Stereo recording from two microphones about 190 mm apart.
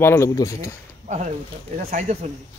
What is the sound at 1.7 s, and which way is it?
Speech, 40° right (ahead or behind).